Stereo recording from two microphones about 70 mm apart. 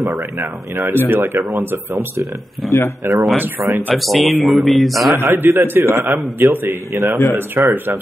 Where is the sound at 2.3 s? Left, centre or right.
Centre.